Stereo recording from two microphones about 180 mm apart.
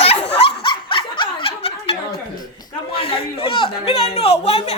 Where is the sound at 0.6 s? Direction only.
30° left (ahead or behind).